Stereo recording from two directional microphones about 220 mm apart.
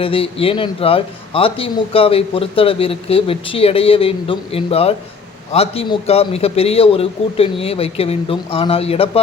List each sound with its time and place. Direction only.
0.0 s a man's voice: 25° left (ahead or behind)